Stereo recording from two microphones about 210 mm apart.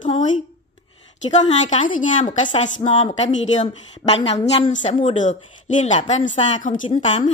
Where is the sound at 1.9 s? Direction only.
40° left (ahead or behind).